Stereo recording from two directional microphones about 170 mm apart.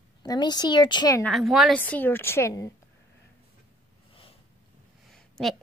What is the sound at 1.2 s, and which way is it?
Speech, centre (ahead or behind).